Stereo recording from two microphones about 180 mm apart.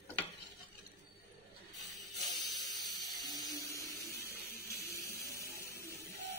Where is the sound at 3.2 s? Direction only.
20° left (ahead or behind).